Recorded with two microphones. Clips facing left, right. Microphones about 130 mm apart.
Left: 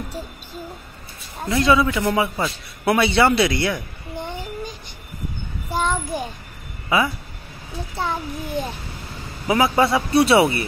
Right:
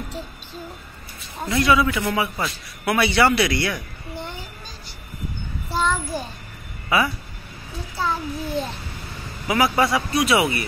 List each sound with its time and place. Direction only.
1.6 s speech: 25° left (ahead or behind)
2.8 s a sound: 25° left (ahead or behind)
6.9 s speech: 20° left (ahead or behind)